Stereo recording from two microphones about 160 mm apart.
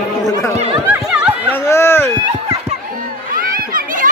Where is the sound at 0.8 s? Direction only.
10° right (ahead or behind).